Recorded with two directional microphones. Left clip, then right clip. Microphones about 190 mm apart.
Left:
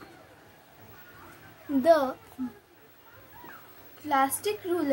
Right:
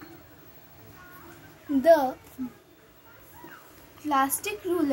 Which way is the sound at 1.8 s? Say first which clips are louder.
Right 2 dB; 15° left (ahead or behind).